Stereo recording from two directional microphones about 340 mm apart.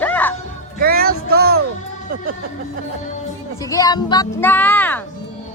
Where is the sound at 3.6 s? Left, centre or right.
Centre.